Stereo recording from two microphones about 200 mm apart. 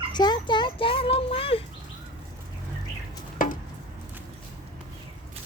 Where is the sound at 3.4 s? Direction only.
45° left (ahead or behind).